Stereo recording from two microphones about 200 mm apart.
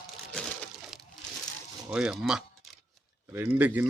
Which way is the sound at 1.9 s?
5° right (ahead or behind).